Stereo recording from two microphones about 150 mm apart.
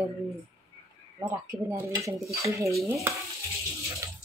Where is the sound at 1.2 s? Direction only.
15° right (ahead or behind).